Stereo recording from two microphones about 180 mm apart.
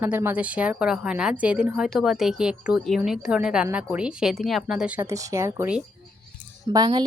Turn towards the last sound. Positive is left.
turn(degrees=-20)  # may be behind; listen again after turning